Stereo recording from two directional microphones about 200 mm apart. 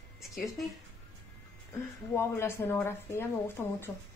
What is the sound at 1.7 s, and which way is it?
Speech, 10° left (ahead or behind).